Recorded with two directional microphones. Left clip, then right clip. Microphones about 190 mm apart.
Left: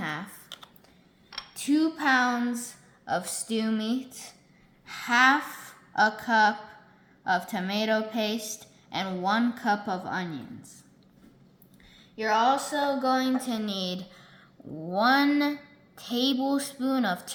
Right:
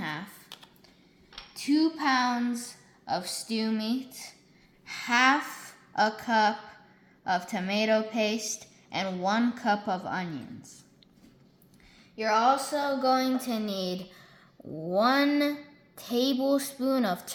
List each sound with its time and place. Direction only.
0.0 s typing: 10° left (ahead or behind)
1.5 s speech: 20° left (ahead or behind)
4.9 s a woman's voice: 15° right (ahead or behind)
12.1 s a child's voice: 35° right (ahead or behind)